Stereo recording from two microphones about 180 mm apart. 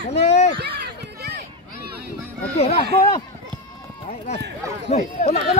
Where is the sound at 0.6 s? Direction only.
65° right (ahead or behind).